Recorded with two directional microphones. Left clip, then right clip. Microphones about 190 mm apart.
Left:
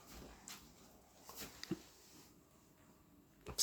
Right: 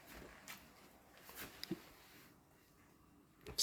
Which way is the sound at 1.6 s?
10° left (ahead or behind).